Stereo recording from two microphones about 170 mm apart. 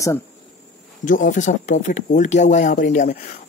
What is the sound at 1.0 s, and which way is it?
Speech, 50° left (ahead or behind).